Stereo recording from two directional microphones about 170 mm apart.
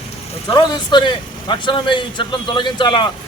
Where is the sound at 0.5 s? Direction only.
25° left (ahead or behind).